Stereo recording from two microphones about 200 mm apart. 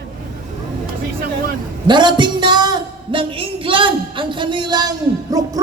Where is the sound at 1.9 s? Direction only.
20° right (ahead or behind).